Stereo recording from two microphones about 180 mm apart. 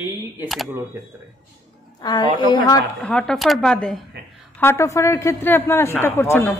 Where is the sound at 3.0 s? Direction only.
5° left (ahead or behind).